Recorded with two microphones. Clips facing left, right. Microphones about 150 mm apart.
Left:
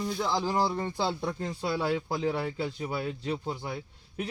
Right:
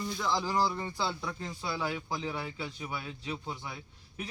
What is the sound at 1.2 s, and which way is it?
Speech, 50° left (ahead or behind).